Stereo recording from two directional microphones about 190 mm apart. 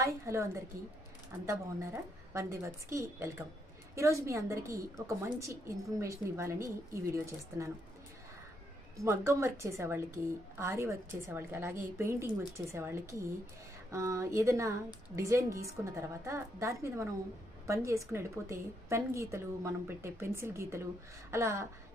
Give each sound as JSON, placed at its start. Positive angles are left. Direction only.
{"t": 0.0, "sound": "a woman's voice", "side_deg": -15}
{"t": 9.0, "sound": "a woman's voice", "side_deg": -15}